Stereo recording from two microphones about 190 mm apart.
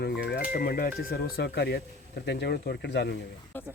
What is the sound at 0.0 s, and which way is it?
Speech, 60° left (ahead or behind).